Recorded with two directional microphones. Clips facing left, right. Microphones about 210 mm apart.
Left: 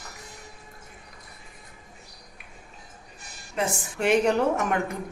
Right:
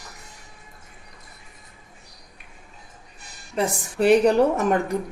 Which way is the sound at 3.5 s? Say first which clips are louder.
Right 4 dB; 35° right (ahead or behind).